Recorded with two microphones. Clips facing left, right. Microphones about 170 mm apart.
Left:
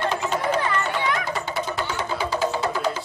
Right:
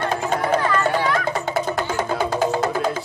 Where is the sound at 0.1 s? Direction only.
50° right (ahead or behind).